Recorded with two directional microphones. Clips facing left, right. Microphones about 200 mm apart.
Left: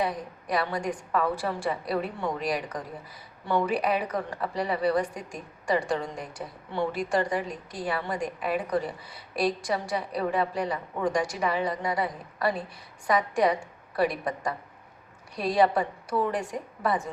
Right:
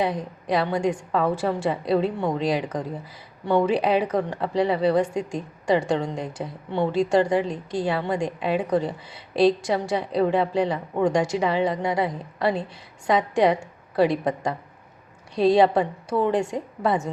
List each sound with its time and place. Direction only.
0.0 s a woman's voice: 25° right (ahead or behind)